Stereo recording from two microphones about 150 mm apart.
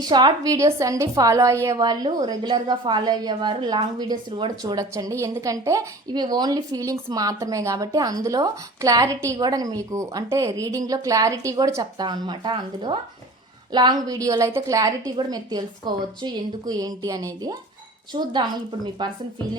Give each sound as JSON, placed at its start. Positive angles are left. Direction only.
{"t": 0.0, "sound": "a woman's voice", "side_deg": -30}